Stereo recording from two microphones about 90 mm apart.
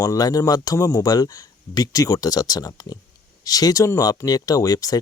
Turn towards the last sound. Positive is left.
turn(degrees=45)  # may be behind; listen again after turning